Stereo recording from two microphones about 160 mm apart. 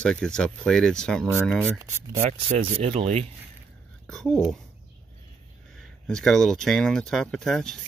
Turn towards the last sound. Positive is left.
turn(degrees=5)  # may be behind; listen again after turning